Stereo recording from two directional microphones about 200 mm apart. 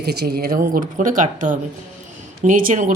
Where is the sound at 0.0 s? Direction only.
55° right (ahead or behind).